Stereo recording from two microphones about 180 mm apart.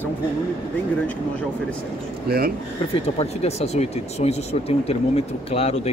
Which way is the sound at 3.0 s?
35° left (ahead or behind).